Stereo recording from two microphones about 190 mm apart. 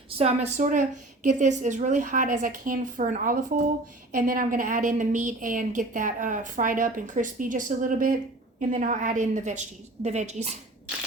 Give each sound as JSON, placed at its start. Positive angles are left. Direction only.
{"t": 0.2, "sound": "a woman's voice", "side_deg": -35}